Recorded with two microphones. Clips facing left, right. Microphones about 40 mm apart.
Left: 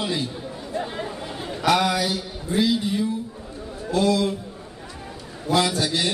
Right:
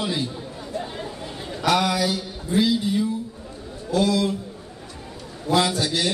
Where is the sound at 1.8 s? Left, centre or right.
Centre.